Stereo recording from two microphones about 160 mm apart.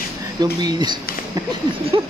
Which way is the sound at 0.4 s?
25° right (ahead or behind).